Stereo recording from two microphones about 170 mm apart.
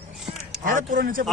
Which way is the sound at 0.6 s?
55° right (ahead or behind).